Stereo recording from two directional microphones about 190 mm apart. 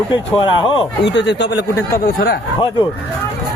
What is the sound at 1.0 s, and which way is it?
Speech, 70° left (ahead or behind).